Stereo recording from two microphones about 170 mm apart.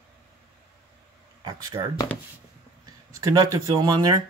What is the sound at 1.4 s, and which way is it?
Speech, 25° right (ahead or behind).